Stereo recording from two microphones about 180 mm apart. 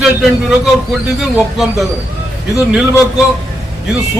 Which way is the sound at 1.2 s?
Centre (ahead or behind).